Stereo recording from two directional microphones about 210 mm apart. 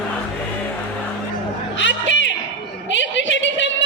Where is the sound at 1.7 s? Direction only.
60° left (ahead or behind).